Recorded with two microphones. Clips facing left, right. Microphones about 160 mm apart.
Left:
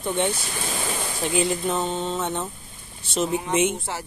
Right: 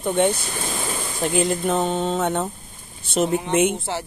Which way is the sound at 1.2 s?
45° right (ahead or behind).